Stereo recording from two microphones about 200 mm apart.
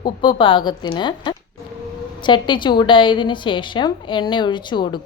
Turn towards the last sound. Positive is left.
turn(degrees=25)  # may be behind; listen again after turning